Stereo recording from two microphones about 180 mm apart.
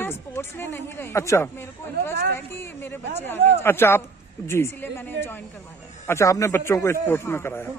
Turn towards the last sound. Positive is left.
turn(degrees=10)  # may be behind; listen again after turning